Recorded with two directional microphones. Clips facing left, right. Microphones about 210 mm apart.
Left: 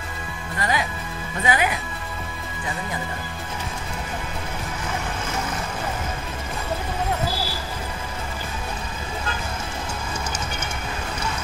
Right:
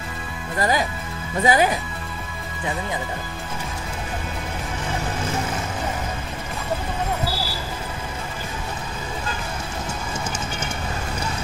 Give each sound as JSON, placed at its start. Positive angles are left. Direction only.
{"t": 0.6, "sound": "speech", "side_deg": -40}